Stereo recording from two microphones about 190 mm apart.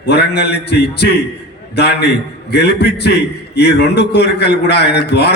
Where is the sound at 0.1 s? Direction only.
60° left (ahead or behind).